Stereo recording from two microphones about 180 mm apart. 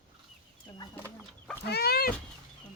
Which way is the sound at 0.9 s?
10° left (ahead or behind).